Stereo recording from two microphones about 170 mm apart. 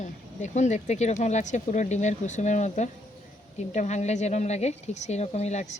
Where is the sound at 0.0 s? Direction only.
45° left (ahead or behind).